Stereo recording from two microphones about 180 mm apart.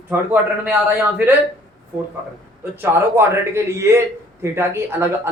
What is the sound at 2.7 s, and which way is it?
A man's voice, 15° right (ahead or behind).